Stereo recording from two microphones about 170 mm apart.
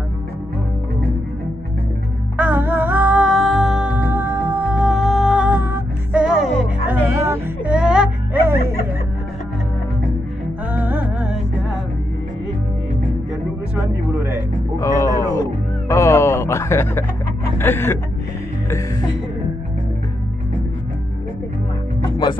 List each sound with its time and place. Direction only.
2.3 s music: 10° right (ahead or behind)
6.9 s music: 15° right (ahead or behind)
10.7 s music: 10° right (ahead or behind)
14.1 s music: 15° right (ahead or behind)
14.8 s music: 20° left (ahead or behind)